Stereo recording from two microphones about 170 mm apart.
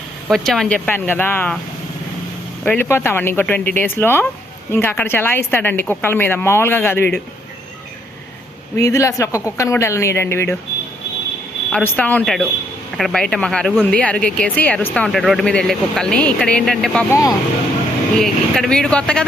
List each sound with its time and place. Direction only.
0.3 s a woman's voice: centre (ahead or behind)
2.6 s a woman's voice: 10° left (ahead or behind)
8.7 s a woman's voice: 20° left (ahead or behind)
11.7 s speech: 10° left (ahead or behind)
17.1 s speech: 20° left (ahead or behind)
18.2 s speech: centre (ahead or behind)